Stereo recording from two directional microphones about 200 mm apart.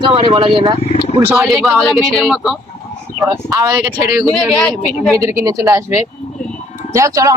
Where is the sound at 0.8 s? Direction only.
30° left (ahead or behind).